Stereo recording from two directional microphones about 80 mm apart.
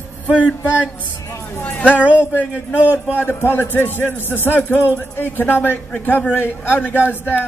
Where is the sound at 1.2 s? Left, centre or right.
Left.